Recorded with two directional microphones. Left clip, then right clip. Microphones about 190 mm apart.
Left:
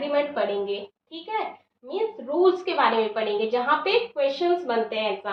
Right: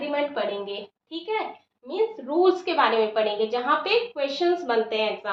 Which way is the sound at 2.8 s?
35° right (ahead or behind).